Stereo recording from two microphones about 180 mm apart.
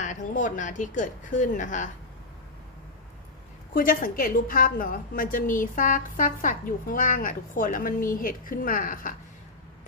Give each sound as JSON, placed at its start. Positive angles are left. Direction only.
{"t": 0.0, "sound": "a woman's voice", "side_deg": 45}
{"t": 3.8, "sound": "a woman's voice", "side_deg": 50}